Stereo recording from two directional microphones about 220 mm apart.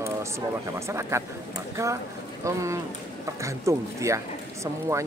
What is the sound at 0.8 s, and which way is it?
Speech, 10° right (ahead or behind).